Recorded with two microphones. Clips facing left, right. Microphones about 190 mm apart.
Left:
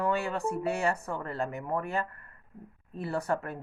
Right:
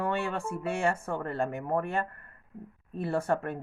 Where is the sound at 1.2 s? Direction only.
50° right (ahead or behind).